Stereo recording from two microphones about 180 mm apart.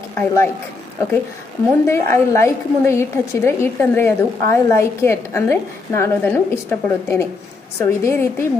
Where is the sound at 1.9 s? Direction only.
15° left (ahead or behind).